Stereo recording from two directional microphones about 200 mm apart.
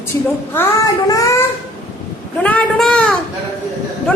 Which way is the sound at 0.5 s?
15° left (ahead or behind).